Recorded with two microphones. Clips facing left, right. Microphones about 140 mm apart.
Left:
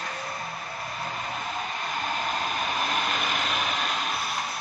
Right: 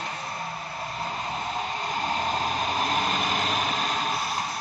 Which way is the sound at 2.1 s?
30° right (ahead or behind).